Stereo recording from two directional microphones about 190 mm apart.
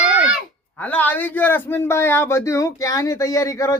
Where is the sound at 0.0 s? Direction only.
5° right (ahead or behind).